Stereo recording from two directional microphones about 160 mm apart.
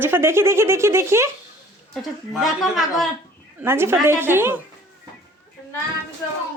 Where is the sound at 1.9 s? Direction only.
Centre (ahead or behind).